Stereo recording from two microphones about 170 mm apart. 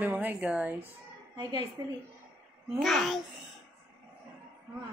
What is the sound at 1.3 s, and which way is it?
Speech, 25° right (ahead or behind).